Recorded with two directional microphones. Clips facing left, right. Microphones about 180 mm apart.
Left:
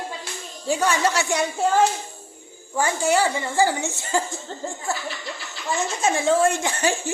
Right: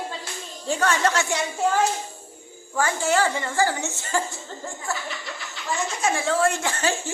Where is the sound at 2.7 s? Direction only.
15° left (ahead or behind).